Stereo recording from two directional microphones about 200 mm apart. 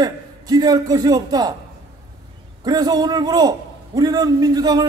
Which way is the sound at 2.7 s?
20° right (ahead or behind).